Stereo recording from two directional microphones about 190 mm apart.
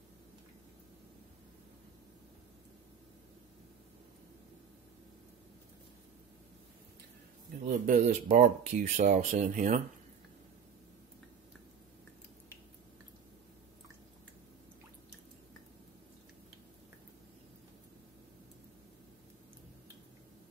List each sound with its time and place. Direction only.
7.6 s speech: 40° right (ahead or behind)